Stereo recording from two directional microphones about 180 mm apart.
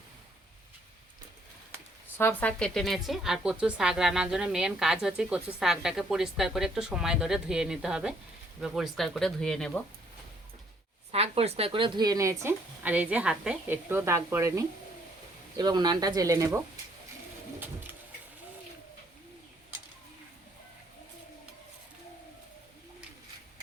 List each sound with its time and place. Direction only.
2.1 s a woman's voice: 10° left (ahead or behind)
11.1 s speech: 35° right (ahead or behind); by 16.5 s 20° right (ahead or behind)